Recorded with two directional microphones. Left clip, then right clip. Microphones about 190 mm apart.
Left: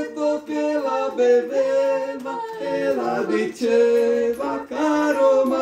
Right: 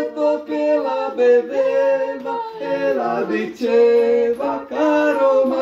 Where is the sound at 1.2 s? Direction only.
10° left (ahead or behind).